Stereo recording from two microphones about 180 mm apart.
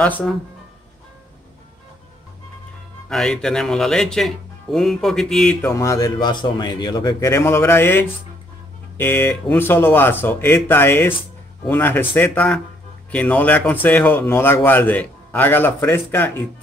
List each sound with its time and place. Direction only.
0.0 s speech: 10° left (ahead or behind)
3.1 s speech: 5° left (ahead or behind)
5.6 s speech: 15° left (ahead or behind)